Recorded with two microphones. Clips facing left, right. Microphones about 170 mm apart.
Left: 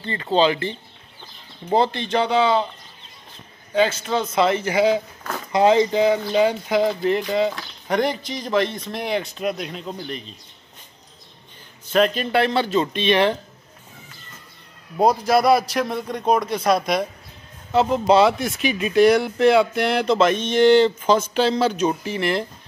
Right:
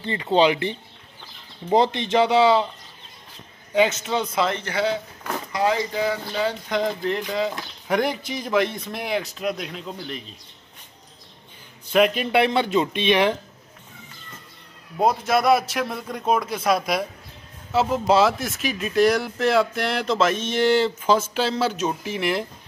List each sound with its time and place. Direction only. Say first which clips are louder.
0.0 s speech: even; 20° right (ahead or behind)
3.7 s speech: left 1 dB; 20° right (ahead or behind)
4.4 s speech: left 8 dB; 5° left (ahead or behind)
5.5 s speech: left 7 dB; 25° left (ahead or behind)
6.7 s speech: left 4 dB; 5° left (ahead or behind)
11.9 s speech: even; 10° right (ahead or behind)
15.0 s speech: left 3 dB; centre (ahead or behind)